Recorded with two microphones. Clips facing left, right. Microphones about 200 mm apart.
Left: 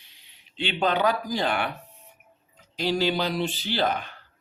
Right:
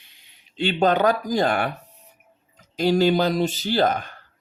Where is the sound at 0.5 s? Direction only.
45° right (ahead or behind).